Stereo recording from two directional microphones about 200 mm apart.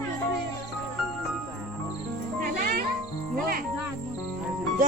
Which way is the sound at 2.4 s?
45° right (ahead or behind).